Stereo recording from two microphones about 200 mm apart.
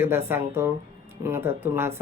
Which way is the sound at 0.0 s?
10° right (ahead or behind).